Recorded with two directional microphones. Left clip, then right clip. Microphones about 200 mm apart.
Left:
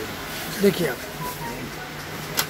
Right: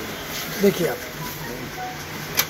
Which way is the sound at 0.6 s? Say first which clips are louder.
Right 1 dB; 5° left (ahead or behind).